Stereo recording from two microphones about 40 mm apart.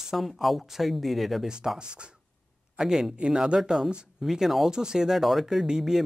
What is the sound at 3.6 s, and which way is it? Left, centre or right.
Speech, centre.